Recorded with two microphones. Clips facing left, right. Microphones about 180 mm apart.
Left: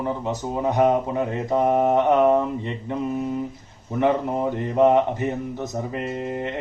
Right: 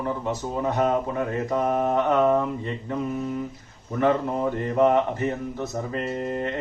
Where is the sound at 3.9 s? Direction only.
15° left (ahead or behind).